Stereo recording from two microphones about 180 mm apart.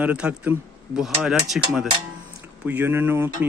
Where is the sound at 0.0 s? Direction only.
5° right (ahead or behind).